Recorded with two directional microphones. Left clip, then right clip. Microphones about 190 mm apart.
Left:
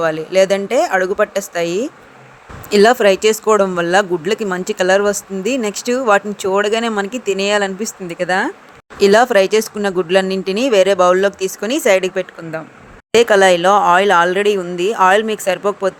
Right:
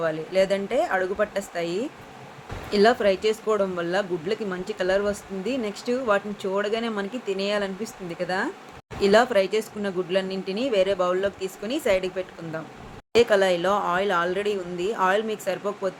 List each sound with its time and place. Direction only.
0.0 s speech: 60° left (ahead or behind)
2.6 s speech: 65° left (ahead or behind)